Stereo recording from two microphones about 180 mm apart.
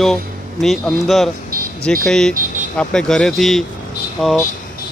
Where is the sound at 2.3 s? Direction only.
50° right (ahead or behind).